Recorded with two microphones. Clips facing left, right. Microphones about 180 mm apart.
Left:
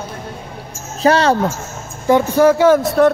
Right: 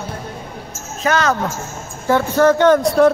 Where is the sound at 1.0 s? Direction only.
30° left (ahead or behind).